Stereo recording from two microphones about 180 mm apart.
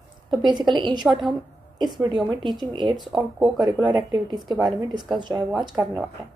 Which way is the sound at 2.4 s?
25° right (ahead or behind).